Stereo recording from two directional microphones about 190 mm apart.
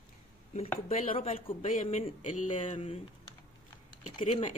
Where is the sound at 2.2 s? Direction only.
45° left (ahead or behind).